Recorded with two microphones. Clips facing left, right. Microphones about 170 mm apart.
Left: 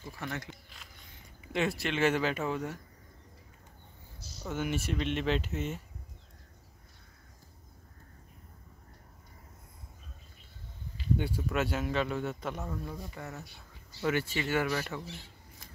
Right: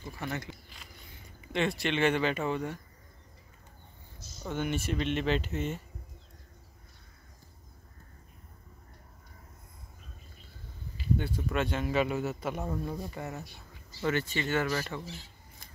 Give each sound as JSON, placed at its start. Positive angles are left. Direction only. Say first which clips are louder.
{"t": 0.0, "sound": "speech", "louder": "right 2 dB", "side_deg": 0}
{"t": 4.4, "sound": "speech", "louder": "right 1 dB", "side_deg": 5}
{"t": 11.1, "sound": "speech", "louder": "even", "side_deg": 10}
{"t": 11.9, "sound": "a man's voice", "louder": "right 3 dB", "side_deg": -10}
{"t": 12.6, "sound": "speech", "louder": "right 4 dB", "side_deg": -35}
{"t": 13.2, "sound": "speech", "louder": "right 4 dB", "side_deg": -20}
{"t": 14.0, "sound": "speech", "louder": "even", "side_deg": 10}